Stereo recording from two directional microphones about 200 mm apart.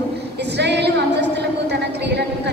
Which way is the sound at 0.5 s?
60° right (ahead or behind).